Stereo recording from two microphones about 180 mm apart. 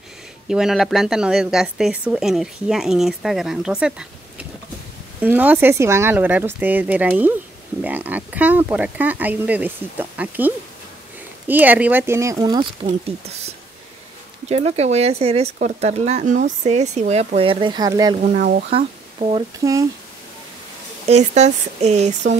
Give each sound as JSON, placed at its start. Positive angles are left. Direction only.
{"t": 0.5, "sound": "speech", "side_deg": -5}
{"t": 14.5, "sound": "speech", "side_deg": -35}
{"t": 18.4, "sound": "speech", "side_deg": -55}
{"t": 18.7, "sound": "speech", "side_deg": -30}
{"t": 19.6, "sound": "speech", "side_deg": -15}
{"t": 21.1, "sound": "speech", "side_deg": -40}